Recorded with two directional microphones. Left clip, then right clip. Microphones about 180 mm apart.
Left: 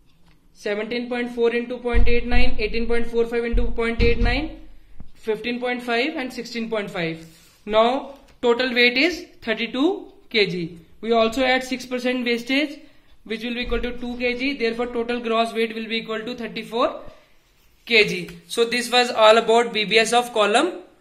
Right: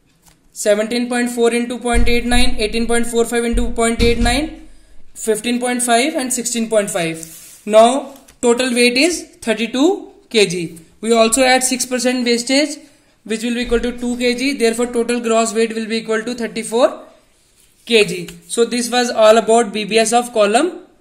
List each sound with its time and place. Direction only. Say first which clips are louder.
0.6 s a woman's voice: right 10 dB; 45° right (ahead or behind)
13.3 s a woman's voice: right 8 dB; 45° right (ahead or behind)